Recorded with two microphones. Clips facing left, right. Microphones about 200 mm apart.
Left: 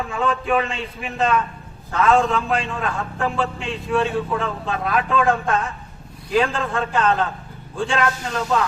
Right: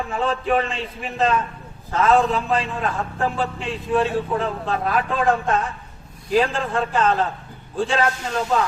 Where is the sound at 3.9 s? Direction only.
35° right (ahead or behind).